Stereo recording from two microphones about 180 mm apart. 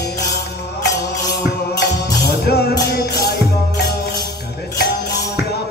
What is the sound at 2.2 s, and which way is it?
Music, 60° left (ahead or behind).